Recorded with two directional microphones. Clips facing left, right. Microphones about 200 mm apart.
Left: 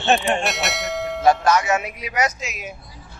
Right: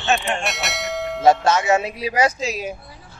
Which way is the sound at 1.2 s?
25° right (ahead or behind).